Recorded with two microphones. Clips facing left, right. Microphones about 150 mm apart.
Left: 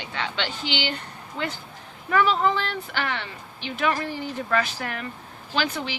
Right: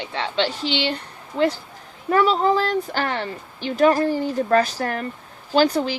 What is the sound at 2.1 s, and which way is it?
Speech, 35° right (ahead or behind).